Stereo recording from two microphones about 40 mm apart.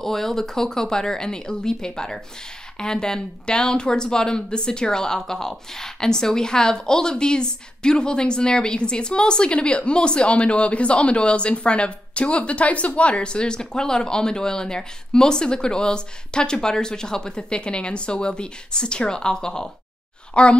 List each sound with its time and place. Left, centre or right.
0.0 s a woman's voice: centre
20.4 s a woman's voice: left